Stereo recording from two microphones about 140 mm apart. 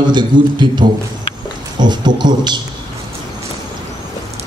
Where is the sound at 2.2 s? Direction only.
30° right (ahead or behind).